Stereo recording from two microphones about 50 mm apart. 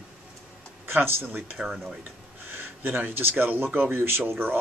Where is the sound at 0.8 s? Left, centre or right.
Right.